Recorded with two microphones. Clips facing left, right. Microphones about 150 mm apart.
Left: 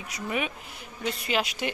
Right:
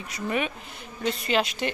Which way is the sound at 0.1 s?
5° left (ahead or behind).